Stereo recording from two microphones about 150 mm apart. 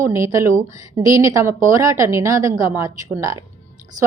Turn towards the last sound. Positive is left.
turn(degrees=-20)  # may be behind; listen again after turning